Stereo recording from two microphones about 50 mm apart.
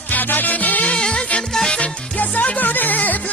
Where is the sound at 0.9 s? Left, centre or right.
Centre.